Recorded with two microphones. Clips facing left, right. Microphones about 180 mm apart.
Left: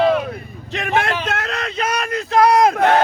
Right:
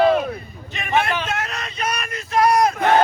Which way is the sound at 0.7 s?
85° left.